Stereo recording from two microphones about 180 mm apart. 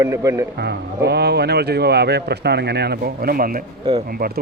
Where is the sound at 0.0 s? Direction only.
15° right (ahead or behind).